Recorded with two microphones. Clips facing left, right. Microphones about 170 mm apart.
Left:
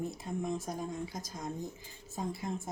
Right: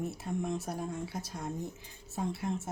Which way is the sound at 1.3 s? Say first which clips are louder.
Right 1 dB; centre (ahead or behind).